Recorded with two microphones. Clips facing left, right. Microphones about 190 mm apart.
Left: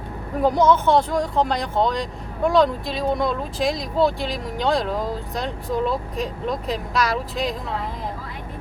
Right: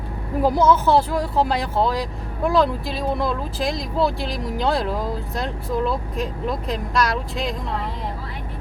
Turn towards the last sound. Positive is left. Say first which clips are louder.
# even
turn(degrees=0)  # may be behind; listen again after turning